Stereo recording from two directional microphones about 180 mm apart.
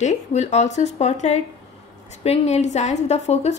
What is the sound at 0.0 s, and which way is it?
A woman's voice, 40° left (ahead or behind).